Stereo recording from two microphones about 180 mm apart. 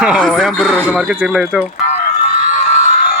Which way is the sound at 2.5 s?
45° left (ahead or behind).